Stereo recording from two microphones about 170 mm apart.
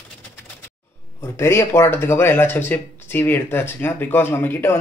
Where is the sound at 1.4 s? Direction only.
15° left (ahead or behind).